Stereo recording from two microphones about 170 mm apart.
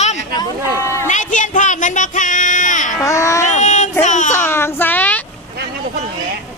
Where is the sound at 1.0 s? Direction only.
45° left (ahead or behind).